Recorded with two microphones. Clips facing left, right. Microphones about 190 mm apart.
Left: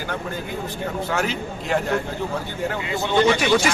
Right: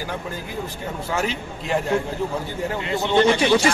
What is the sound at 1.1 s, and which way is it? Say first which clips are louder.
Speech: left 1 dB; centre (ahead or behind).